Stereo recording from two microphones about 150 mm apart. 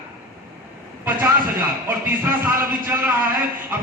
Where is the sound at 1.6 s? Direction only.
15° right (ahead or behind).